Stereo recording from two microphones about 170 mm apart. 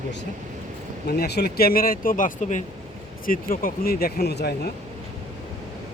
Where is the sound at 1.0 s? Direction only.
70° left (ahead or behind).